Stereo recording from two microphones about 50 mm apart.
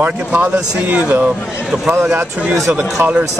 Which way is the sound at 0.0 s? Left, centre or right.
Right.